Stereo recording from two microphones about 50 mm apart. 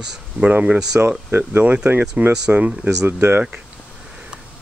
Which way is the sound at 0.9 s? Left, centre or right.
Right.